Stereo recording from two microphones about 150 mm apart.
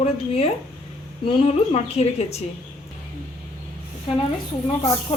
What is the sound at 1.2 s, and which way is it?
Speech, 40° left (ahead or behind).